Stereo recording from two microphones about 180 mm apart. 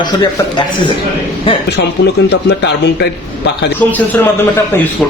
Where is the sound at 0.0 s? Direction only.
25° left (ahead or behind).